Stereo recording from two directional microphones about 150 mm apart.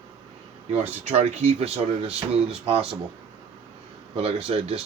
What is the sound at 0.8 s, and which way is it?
Speech, 45° right (ahead or behind).